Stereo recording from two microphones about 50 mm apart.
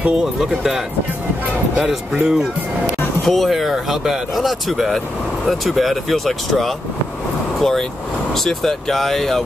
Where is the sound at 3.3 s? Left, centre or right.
Centre.